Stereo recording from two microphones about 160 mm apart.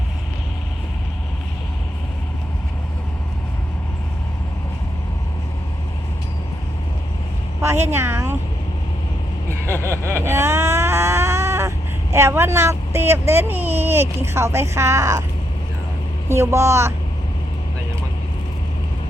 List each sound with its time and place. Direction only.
7.9 s speech: 15° right (ahead or behind)
9.5 s a sound: 15° right (ahead or behind)
12.1 s speech: 15° right (ahead or behind)
16.3 s speech: 15° right (ahead or behind)